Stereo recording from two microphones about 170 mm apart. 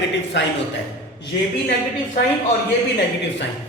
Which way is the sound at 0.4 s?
90° left.